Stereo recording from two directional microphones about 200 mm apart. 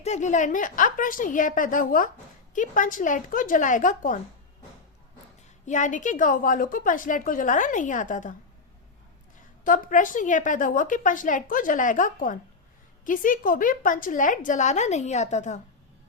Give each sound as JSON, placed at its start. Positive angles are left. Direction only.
{"t": 0.0, "sound": "a woman's voice", "side_deg": 35}
{"t": 5.6, "sound": "a woman's voice", "side_deg": 40}
{"t": 9.6, "sound": "a woman's voice", "side_deg": 40}